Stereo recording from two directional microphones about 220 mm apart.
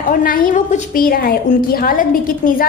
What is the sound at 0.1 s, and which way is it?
A woman's voice, 40° left (ahead or behind).